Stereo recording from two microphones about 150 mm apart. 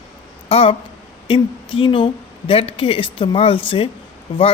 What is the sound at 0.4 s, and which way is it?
A woman's voice, 40° left (ahead or behind).